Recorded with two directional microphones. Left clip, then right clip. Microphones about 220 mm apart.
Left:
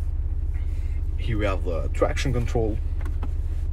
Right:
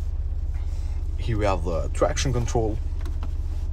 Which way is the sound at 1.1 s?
20° right (ahead or behind).